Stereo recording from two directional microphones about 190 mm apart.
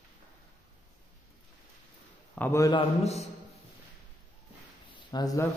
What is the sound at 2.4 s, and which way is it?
Speech, 15° left (ahead or behind).